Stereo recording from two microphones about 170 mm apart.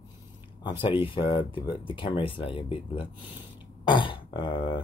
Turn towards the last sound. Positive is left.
turn(degrees=30)  # may be behind; listen again after turning